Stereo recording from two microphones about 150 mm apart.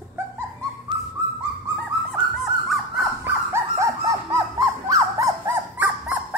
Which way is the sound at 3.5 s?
20° right (ahead or behind).